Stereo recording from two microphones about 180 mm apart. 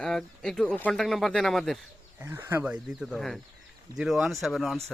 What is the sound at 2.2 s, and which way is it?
Speech, 15° right (ahead or behind).